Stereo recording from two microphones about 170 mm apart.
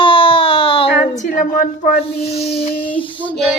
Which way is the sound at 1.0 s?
45° left (ahead or behind).